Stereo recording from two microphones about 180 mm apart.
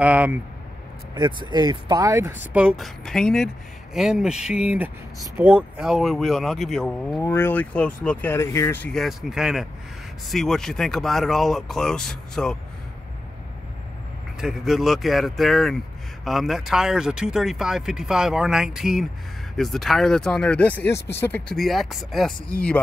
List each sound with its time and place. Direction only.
0.0 s speech: 10° right (ahead or behind)
1.1 s speech: 25° right (ahead or behind); by 7.2 s centre (ahead or behind)
7.2 s speech: 15° left (ahead or behind)
14.4 s speech: centre (ahead or behind)